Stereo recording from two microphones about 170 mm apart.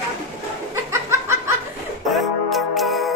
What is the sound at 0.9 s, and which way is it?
Snicker, 15° right (ahead or behind).